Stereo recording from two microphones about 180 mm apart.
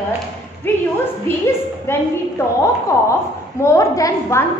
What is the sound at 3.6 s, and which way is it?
Speech, 15° left (ahead or behind).